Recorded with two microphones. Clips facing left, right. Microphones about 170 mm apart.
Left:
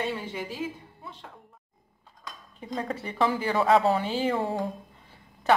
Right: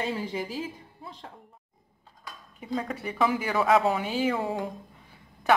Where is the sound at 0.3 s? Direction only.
35° right (ahead or behind).